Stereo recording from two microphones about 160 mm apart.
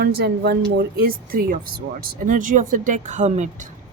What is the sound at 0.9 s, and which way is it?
Speech, 65° right (ahead or behind).